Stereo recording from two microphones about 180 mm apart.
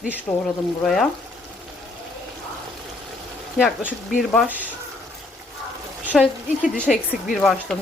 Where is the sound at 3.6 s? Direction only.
5° right (ahead or behind).